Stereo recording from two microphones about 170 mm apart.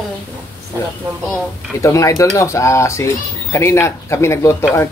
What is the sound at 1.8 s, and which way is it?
Speech, 20° left (ahead or behind).